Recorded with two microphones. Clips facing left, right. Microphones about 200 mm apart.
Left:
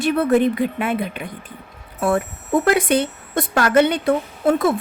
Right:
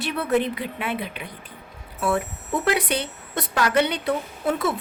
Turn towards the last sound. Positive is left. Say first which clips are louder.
# left 7 dB
turn(degrees=50)  # may be behind; listen again after turning